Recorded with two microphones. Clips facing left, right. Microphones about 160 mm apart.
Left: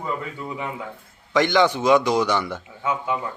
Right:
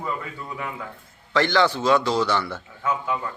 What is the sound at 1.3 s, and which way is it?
A man's voice, 15° left (ahead or behind).